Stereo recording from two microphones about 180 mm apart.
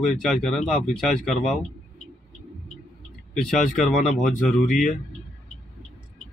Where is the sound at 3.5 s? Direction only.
45° left (ahead or behind).